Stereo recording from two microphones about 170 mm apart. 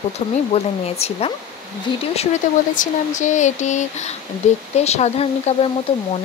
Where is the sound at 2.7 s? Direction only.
50° left (ahead or behind).